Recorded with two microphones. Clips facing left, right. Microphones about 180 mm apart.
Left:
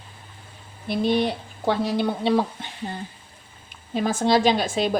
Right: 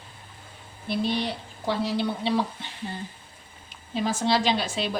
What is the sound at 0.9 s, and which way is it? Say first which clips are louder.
A woman's voice: left 5 dB; 50° left (ahead or behind).